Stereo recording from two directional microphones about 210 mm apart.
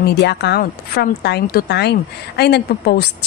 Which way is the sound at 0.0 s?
50° left (ahead or behind).